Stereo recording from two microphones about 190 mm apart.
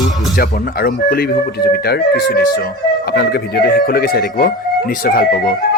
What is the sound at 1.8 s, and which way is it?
Speech, 55° left (ahead or behind).